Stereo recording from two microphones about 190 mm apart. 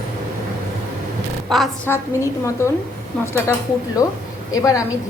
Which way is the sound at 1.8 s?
15° left (ahead or behind).